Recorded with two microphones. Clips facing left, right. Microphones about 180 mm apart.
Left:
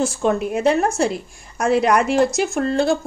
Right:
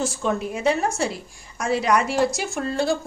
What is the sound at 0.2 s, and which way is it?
A woman's voice, 60° left (ahead or behind).